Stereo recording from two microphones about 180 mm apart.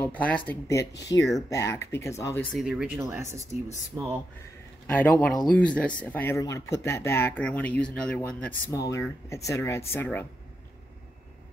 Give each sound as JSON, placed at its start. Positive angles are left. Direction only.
{"t": 0.0, "sound": "speech", "side_deg": 10}
{"t": 2.5, "sound": "speech", "side_deg": -5}
{"t": 3.0, "sound": "speech", "side_deg": -15}
{"t": 4.8, "sound": "speech", "side_deg": 10}